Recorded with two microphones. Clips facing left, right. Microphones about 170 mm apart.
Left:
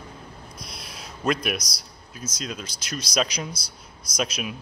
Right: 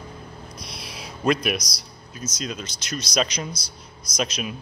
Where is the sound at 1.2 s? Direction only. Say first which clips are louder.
Right 3 dB; centre (ahead or behind).